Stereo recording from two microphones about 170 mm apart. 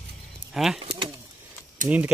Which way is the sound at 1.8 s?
5° right (ahead or behind).